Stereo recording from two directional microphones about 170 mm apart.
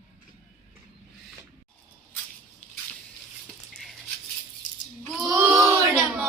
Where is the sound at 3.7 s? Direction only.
5° left (ahead or behind).